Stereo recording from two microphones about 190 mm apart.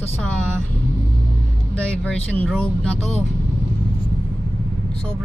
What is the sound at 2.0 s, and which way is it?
Speech, 5° left (ahead or behind).